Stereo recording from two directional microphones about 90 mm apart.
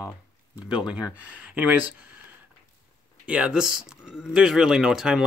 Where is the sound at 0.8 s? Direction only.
15° right (ahead or behind).